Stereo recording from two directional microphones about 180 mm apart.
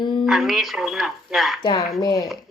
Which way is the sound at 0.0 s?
25° left (ahead or behind).